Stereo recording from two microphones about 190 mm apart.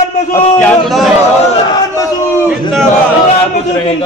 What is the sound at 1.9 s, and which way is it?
Speech, 15° left (ahead or behind).